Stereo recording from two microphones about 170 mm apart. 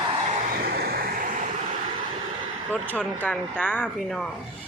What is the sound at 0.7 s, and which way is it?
Vehicle, 65° right (ahead or behind).